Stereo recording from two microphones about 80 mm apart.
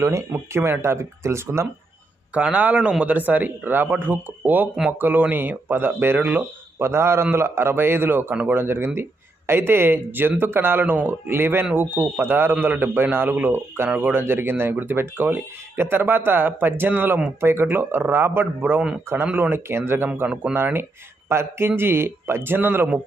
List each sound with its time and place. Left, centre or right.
0.0 s speech: right
2.3 s a man's voice: centre
6.7 s speech: right